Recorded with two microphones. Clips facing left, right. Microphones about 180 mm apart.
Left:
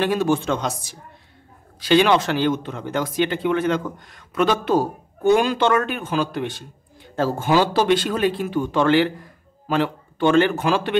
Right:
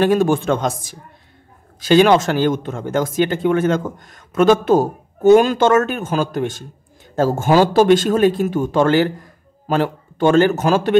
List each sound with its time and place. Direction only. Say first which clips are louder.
0.0 s a man's voice: right 5 dB; 45° right (ahead or behind)